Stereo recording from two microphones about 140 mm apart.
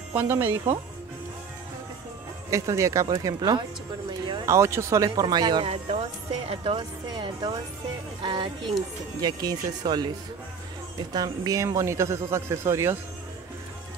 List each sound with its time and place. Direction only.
0.1 s speech: 15° right (ahead or behind)
2.5 s speech: 20° right (ahead or behind)
4.5 s speech: 20° right (ahead or behind)